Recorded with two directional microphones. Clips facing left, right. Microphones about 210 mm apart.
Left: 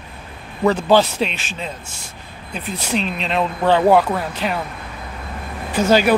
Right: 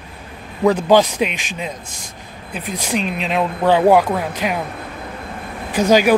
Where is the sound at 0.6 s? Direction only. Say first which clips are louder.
Right 2 dB; 10° right (ahead or behind).